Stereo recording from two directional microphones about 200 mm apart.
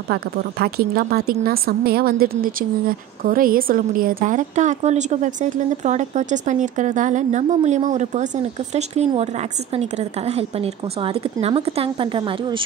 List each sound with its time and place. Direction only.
0.1 s a woman's voice: 50° right (ahead or behind); by 12.6 s 25° right (ahead or behind)